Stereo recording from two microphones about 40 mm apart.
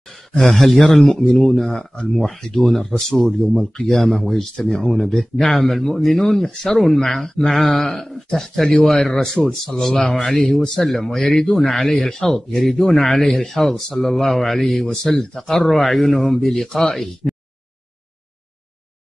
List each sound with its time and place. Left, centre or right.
0.6 s speech: centre
16.6 s speech: centre
16.9 s speech: centre